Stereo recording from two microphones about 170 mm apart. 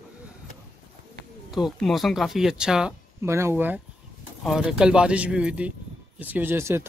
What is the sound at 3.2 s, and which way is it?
Speech, 15° right (ahead or behind).